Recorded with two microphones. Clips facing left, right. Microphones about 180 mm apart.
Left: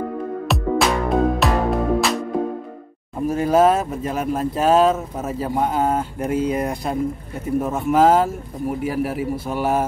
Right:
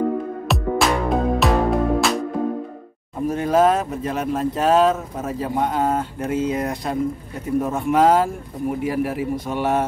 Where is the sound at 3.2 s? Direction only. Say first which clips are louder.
Left 1 dB; 5° left (ahead or behind).